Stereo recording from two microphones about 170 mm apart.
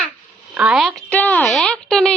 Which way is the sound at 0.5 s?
5° right (ahead or behind).